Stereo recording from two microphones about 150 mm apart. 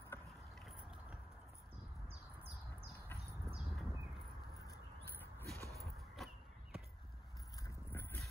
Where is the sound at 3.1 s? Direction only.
10° left (ahead or behind).